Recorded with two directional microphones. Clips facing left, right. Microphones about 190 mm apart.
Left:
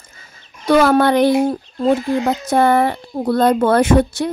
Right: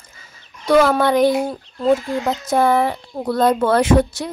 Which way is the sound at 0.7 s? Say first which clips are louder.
Left 2 dB; 65° left (ahead or behind).